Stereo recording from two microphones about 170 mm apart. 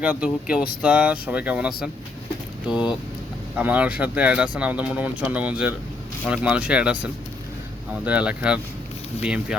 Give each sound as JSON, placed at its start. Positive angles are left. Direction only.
{"t": 0.0, "sound": "speech", "side_deg": -10}
{"t": 2.6, "sound": "speech", "side_deg": 25}
{"t": 3.6, "sound": "speech", "side_deg": -10}